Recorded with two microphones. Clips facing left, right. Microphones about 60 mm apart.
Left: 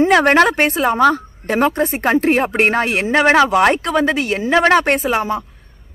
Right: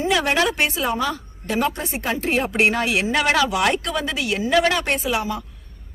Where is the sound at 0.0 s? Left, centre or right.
Left.